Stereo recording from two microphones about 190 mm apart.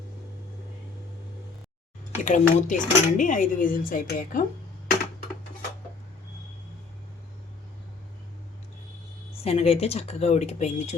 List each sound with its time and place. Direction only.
2.2 s speech: 40° left (ahead or behind)
9.4 s speech: 30° left (ahead or behind)